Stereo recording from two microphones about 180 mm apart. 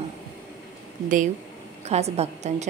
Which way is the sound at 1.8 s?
35° right (ahead or behind).